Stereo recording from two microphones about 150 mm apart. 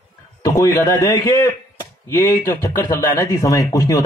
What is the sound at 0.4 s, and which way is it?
A man's voice, 20° left (ahead or behind).